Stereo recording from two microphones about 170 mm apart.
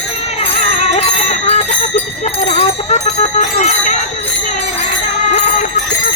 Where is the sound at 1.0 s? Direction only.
40° left (ahead or behind).